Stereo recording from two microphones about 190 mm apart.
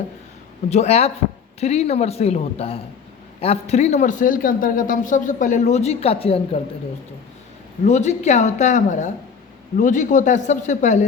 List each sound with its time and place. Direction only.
0.7 s speech: 35° left (ahead or behind)
7.9 s speech: 35° left (ahead or behind)